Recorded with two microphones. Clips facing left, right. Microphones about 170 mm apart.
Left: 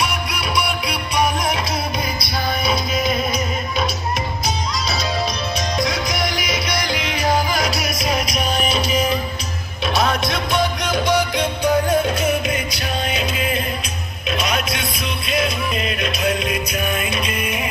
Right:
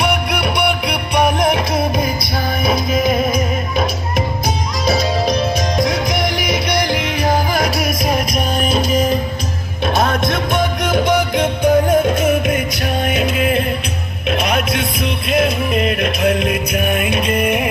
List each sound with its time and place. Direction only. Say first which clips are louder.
0.0 s music: right 6 dB; 60° right (ahead or behind)